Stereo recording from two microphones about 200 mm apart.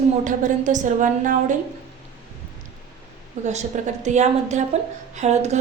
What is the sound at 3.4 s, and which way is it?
A woman's voice, 35° right (ahead or behind).